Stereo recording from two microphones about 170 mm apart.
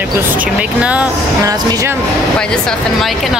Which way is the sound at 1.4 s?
20° right (ahead or behind).